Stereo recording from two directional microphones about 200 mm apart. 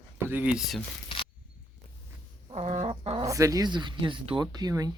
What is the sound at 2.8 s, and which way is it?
Chicken, 25° right (ahead or behind).